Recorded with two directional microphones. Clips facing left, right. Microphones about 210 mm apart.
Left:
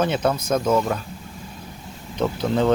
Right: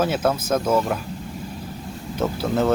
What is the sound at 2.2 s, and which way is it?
Speech, 5° right (ahead or behind).